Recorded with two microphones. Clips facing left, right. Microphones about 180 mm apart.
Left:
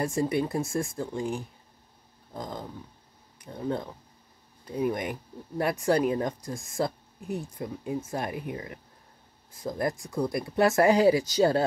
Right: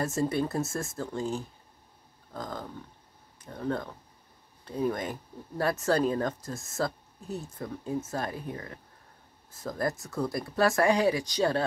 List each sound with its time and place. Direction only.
0.0 s speech: 15° left (ahead or behind)